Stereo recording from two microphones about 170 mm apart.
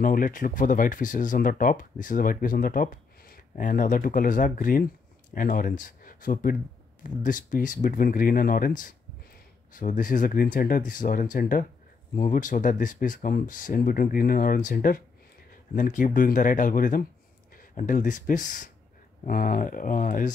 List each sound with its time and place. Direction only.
0.0 s speech: 55° left (ahead or behind)